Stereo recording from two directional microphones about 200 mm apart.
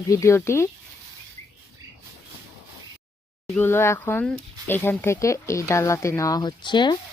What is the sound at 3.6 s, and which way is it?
Speech, 10° left (ahead or behind).